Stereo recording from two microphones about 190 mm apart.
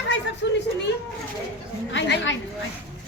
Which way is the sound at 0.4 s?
65° left (ahead or behind).